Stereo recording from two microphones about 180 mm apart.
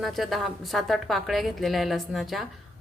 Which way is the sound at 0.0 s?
Centre (ahead or behind).